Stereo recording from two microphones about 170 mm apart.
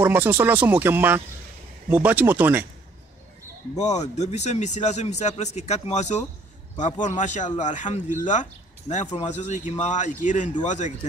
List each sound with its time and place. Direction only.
0.0 s speech: 10° right (ahead or behind)
3.7 s a man's voice: 40° left (ahead or behind)